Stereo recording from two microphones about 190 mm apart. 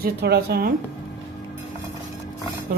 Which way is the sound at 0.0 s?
60° right (ahead or behind).